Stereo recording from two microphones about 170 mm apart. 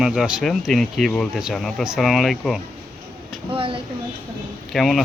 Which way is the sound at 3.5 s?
30° right (ahead or behind).